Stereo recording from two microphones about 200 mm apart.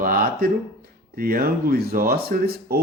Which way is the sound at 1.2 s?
45° right (ahead or behind).